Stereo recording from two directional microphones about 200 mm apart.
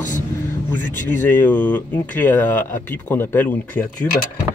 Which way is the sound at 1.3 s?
10° left (ahead or behind).